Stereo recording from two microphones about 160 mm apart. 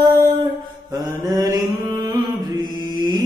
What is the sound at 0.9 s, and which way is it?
Mantra, 25° right (ahead or behind).